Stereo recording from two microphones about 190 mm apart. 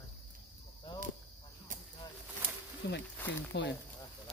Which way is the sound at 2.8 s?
60° left (ahead or behind).